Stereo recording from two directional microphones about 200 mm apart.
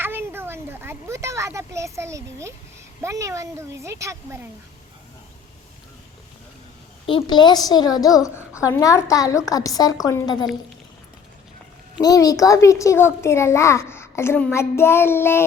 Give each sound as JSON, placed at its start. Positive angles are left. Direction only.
{"t": 0.0, "sound": "a sound", "side_deg": -10}
{"t": 3.0, "sound": "a child's voice", "side_deg": -15}
{"t": 7.1, "sound": "a woman's voice", "side_deg": 25}
{"t": 11.9, "sound": "a child's voice", "side_deg": 20}